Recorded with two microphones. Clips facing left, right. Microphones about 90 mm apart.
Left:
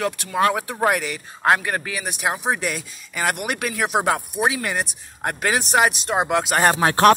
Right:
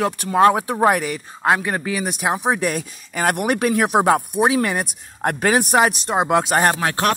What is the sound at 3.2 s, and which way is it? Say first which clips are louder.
Speech: right 5 dB; 40° right (ahead or behind).